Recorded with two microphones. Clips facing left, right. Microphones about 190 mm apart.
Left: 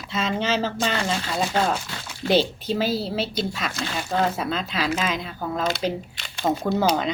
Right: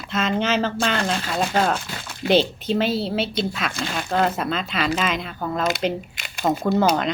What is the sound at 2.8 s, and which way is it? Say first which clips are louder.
Speech: right 2 dB; 25° right (ahead or behind).